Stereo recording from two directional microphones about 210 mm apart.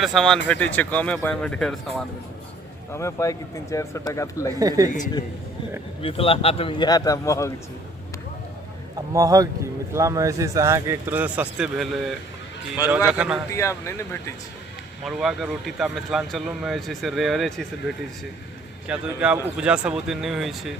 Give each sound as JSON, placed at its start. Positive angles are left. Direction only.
{"t": 0.0, "sound": "speech", "side_deg": 0}
{"t": 2.9, "sound": "speech", "side_deg": 15}
{"t": 4.6, "sound": "speech", "side_deg": -20}
{"t": 6.0, "sound": "a man's voice", "side_deg": 25}
{"t": 9.1, "sound": "speech", "side_deg": -15}
{"t": 13.5, "sound": "speech", "side_deg": 15}
{"t": 15.0, "sound": "speech", "side_deg": 0}